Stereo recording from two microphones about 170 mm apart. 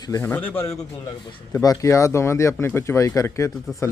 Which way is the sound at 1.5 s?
20° left (ahead or behind).